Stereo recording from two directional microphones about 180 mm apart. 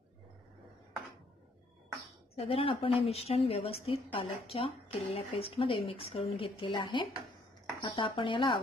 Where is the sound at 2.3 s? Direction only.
35° left (ahead or behind).